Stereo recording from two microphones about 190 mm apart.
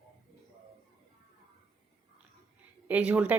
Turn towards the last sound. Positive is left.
turn(degrees=-5)  # may be behind; listen again after turning